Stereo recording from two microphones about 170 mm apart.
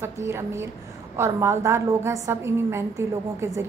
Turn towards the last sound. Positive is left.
turn(degrees=-15)  # may be behind; listen again after turning